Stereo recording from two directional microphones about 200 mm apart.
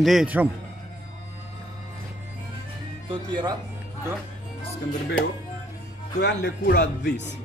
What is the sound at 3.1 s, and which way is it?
Speech, 20° right (ahead or behind).